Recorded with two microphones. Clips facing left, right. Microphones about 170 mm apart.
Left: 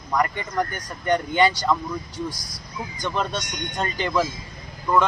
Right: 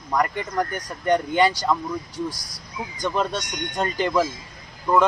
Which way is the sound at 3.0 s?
5° right (ahead or behind).